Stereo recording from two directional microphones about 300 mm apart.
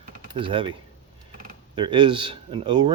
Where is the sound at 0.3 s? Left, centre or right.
Centre.